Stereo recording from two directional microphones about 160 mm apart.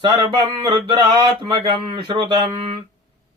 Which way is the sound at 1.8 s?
35° right (ahead or behind).